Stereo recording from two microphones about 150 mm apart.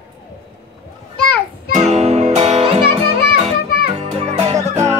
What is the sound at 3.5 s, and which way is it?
Music, 90° left.